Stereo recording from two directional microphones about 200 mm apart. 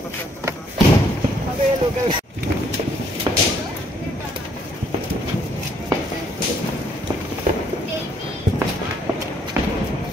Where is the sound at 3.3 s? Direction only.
20° right (ahead or behind).